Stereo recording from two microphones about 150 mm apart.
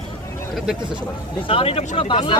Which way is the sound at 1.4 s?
40° left (ahead or behind).